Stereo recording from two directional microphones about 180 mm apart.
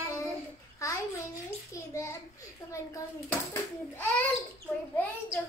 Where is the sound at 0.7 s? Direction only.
15° left (ahead or behind).